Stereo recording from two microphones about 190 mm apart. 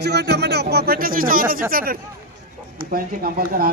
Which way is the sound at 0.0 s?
60° right (ahead or behind).